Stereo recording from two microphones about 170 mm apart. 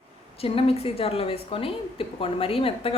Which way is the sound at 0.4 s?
35° left (ahead or behind).